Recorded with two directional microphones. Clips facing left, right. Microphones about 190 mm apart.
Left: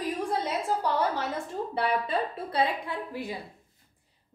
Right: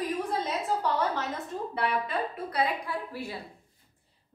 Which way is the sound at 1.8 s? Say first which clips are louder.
Left 2 dB; 30° left (ahead or behind).